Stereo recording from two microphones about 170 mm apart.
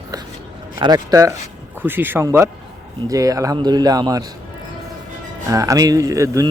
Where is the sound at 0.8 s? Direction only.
25° right (ahead or behind).